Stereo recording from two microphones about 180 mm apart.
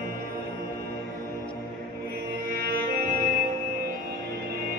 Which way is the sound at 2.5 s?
55° right (ahead or behind).